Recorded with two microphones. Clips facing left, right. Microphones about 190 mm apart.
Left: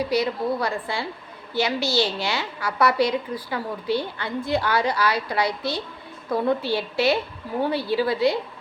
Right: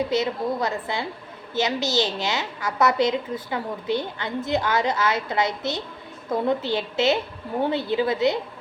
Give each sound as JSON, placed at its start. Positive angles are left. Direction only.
{"t": 0.0, "sound": "a woman's voice", "side_deg": -25}